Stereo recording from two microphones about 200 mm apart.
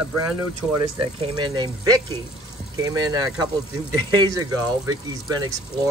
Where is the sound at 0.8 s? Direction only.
20° right (ahead or behind).